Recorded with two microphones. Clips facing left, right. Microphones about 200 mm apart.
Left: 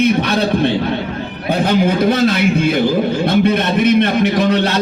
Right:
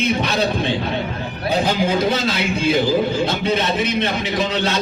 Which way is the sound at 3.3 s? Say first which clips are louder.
Left 6 dB; 55° left (ahead or behind).